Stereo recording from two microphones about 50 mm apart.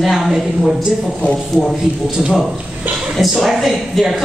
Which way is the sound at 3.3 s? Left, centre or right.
Centre.